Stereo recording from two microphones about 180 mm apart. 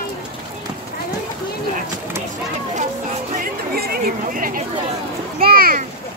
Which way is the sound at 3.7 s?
55° right (ahead or behind).